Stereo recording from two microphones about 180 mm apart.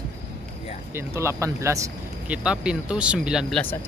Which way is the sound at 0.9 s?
15° right (ahead or behind).